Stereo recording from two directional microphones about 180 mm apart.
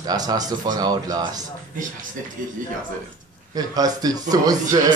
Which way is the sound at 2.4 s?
50° right (ahead or behind).